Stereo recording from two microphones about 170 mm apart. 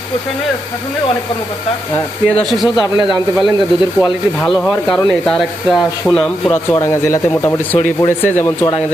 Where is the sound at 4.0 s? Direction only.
25° left (ahead or behind).